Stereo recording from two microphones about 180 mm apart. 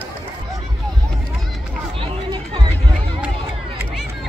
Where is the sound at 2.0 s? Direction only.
25° right (ahead or behind).